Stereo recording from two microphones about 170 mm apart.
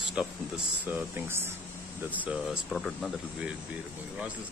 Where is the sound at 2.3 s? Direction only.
Centre (ahead or behind).